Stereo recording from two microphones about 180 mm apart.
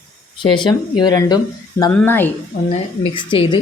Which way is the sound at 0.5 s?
25° left (ahead or behind).